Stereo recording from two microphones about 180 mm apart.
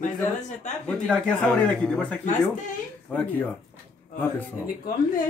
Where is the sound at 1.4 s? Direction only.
5° left (ahead or behind).